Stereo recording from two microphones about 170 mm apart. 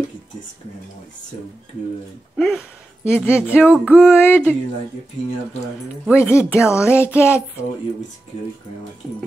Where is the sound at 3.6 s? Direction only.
10° right (ahead or behind).